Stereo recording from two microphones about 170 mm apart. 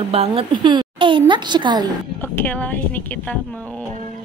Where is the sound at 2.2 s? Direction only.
10° left (ahead or behind).